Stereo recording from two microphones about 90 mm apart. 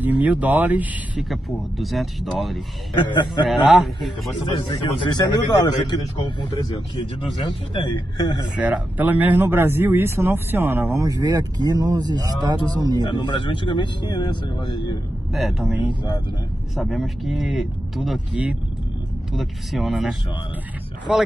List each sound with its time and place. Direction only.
0.0 s speech: 20° right (ahead or behind)
1.1 s speech: centre (ahead or behind)
3.8 s speech: centre (ahead or behind)
4.5 s a man's voice: 65° left (ahead or behind)
8.5 s speech: 15° right (ahead or behind)
11.1 s speech: 40° right (ahead or behind)
13.0 s a man's voice: 55° left (ahead or behind)
15.3 s speech: centre (ahead or behind)
15.9 s a man's voice: 60° left (ahead or behind)
16.7 s speech: centre (ahead or behind)